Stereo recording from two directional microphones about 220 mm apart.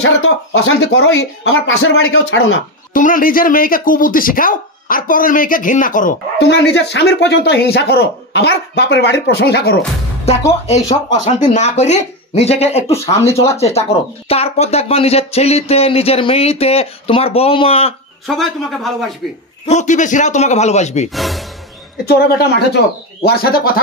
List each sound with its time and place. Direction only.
0.0 s speech: 60° left (ahead or behind)
2.9 s a man's voice: 40° left (ahead or behind)
6.4 s speech: 50° left (ahead or behind)
10.3 s a man's voice: 30° left (ahead or behind)
18.2 s speech: centre (ahead or behind)
19.7 s a man's voice: 35° left (ahead or behind)
21.1 s speech: centre (ahead or behind)
22.0 s speech: 45° left (ahead or behind)